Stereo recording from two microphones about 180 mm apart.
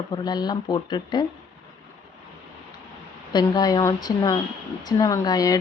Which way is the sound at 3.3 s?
20° left (ahead or behind).